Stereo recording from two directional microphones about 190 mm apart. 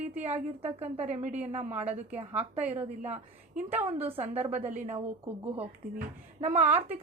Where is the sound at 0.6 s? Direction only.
35° right (ahead or behind).